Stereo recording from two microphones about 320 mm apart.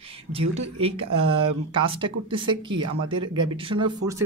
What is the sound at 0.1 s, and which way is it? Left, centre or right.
Speech, centre.